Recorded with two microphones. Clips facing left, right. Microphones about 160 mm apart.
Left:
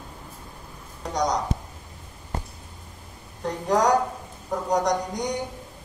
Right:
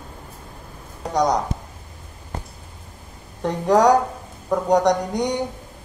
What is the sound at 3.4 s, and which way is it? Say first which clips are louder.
Speech: right 6 dB; 65° right (ahead or behind).